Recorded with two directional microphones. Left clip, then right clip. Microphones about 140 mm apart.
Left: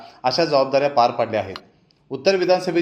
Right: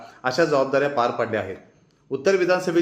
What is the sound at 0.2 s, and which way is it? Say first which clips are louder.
A man's voice: left 2 dB; 15° left (ahead or behind).